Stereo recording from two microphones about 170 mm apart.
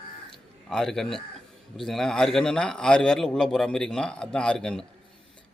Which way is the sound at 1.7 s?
Centre (ahead or behind).